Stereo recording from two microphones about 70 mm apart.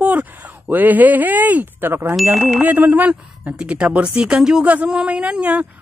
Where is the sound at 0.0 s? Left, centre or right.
Right.